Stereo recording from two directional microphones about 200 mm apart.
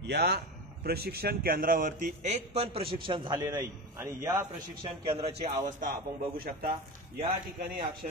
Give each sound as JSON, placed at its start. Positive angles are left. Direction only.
{"t": 0.0, "sound": "a man's voice", "side_deg": -55}
{"t": 4.8, "sound": "a man's voice", "side_deg": -25}
{"t": 6.3, "sound": "a man's voice", "side_deg": -50}